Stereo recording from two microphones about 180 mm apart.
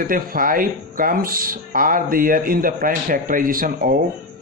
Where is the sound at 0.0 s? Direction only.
50° right (ahead or behind).